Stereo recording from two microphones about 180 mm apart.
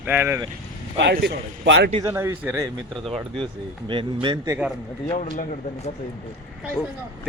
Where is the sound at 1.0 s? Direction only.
75° right (ahead or behind).